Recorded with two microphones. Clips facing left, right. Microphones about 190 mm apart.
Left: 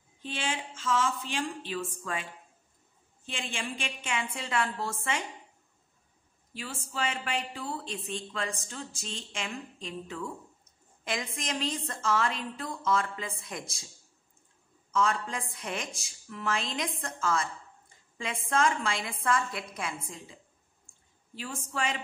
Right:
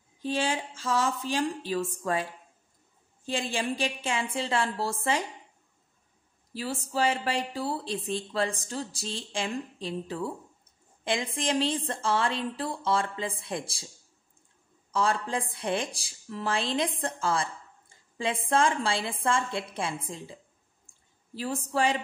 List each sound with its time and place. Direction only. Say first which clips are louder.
0.2 s speech: right 6 dB; 40° right (ahead or behind)
3.3 s speech: right 7 dB; 35° right (ahead or behind)
6.5 s speech: right 7 dB; 35° right (ahead or behind)
14.9 s speech: right 2 dB; 35° right (ahead or behind)
21.4 s speech: right 7 dB; 35° right (ahead or behind)